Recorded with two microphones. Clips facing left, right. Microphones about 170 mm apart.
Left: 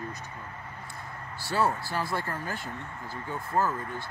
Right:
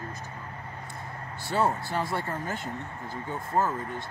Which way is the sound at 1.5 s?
20° right (ahead or behind).